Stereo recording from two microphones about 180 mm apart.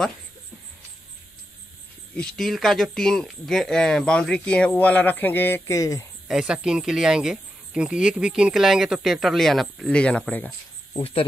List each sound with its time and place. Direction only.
2.1 s speech: centre (ahead or behind); by 6.0 s 20° left (ahead or behind)
6.2 s speech: 5° right (ahead or behind)
10.9 s speech: 30° left (ahead or behind)